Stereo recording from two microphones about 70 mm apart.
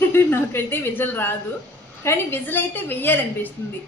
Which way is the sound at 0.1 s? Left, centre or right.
Left.